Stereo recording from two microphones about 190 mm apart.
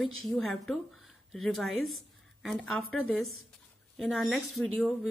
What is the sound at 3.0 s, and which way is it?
Speech, 90° right.